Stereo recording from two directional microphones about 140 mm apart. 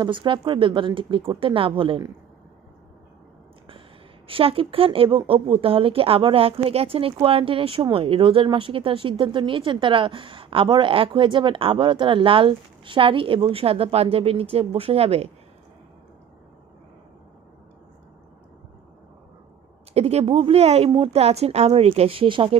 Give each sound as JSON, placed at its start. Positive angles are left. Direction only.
{"t": 0.0, "sound": "speech", "side_deg": -35}
{"t": 4.3, "sound": "speech", "side_deg": -40}
{"t": 19.9, "sound": "a woman's voice", "side_deg": -50}